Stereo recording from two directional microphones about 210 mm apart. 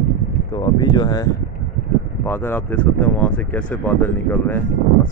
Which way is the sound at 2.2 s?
10° left (ahead or behind).